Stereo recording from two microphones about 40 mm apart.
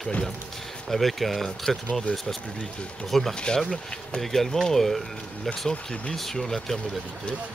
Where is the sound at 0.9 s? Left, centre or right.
Centre.